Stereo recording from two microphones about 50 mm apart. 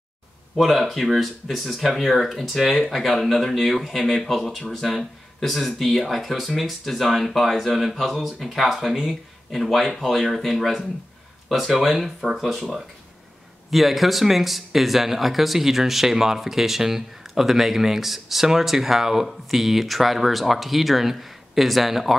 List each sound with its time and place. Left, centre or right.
0.8 s speech: centre